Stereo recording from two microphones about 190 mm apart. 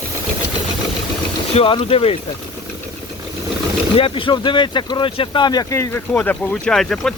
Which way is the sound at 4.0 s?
25° left (ahead or behind).